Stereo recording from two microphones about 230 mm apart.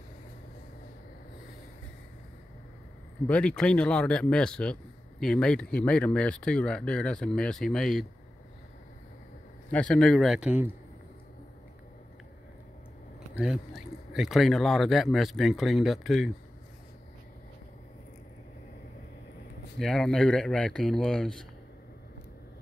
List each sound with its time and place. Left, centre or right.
3.3 s speech: centre
9.7 s speech: centre
13.4 s speech: centre
19.8 s speech: centre